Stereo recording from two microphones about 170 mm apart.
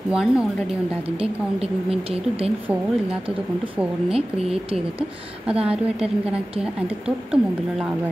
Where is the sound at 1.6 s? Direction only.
35° right (ahead or behind).